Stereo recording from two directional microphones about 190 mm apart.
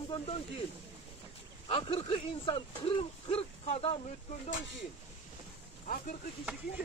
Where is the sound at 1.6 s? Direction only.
30° left (ahead or behind).